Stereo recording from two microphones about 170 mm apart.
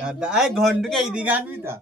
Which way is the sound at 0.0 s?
5° right (ahead or behind).